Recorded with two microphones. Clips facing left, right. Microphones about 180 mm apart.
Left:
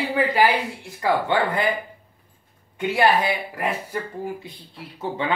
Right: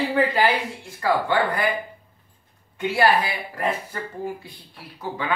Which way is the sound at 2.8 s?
20° left (ahead or behind).